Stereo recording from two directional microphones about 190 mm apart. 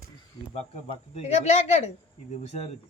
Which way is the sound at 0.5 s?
35° left (ahead or behind).